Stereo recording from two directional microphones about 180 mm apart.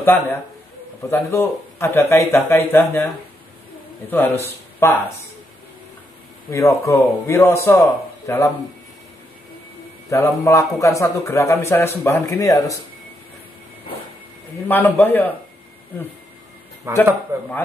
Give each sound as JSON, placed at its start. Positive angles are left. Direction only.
{"t": 0.0, "sound": "a man's voice", "side_deg": 10}
{"t": 4.1, "sound": "speech", "side_deg": 10}
{"t": 6.5, "sound": "a man's voice", "side_deg": 15}
{"t": 10.0, "sound": "a man's voice", "side_deg": 15}
{"t": 14.7, "sound": "a man's voice", "side_deg": 10}
{"t": 17.3, "sound": "a man's voice", "side_deg": -15}